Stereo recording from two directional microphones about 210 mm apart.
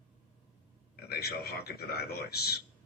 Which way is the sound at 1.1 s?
50° left (ahead or behind).